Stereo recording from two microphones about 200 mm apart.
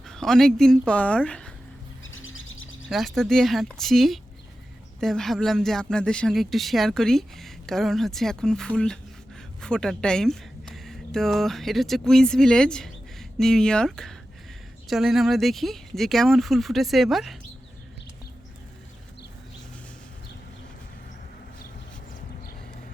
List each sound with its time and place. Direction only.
0.0 s speech: centre (ahead or behind)
2.0 s music: 80° left
2.9 s speech: centre (ahead or behind)